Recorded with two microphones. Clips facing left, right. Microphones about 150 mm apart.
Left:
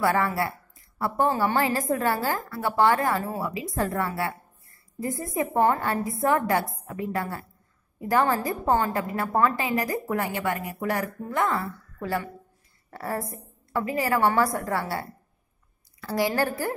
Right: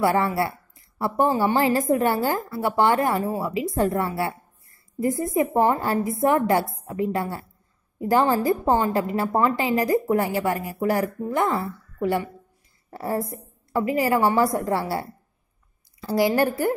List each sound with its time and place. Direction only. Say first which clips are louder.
0.0 s a woman's voice: right 3 dB; 25° right (ahead or behind)